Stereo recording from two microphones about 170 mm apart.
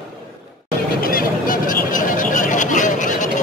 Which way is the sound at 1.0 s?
55° left (ahead or behind).